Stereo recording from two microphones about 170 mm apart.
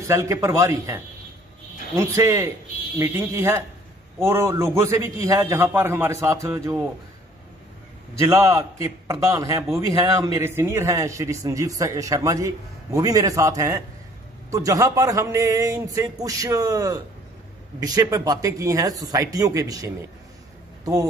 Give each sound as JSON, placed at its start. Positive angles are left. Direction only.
{"t": 0.0, "sound": "a man's voice", "side_deg": -15}
{"t": 8.2, "sound": "a man's voice", "side_deg": -15}